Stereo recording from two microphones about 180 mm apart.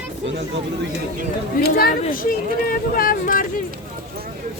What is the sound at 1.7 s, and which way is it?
Speech, 55° left (ahead or behind).